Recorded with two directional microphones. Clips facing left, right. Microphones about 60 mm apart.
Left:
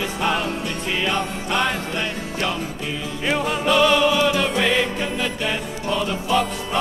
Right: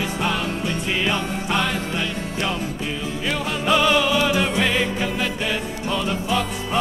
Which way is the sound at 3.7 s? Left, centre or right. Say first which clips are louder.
Left 1 dB; centre.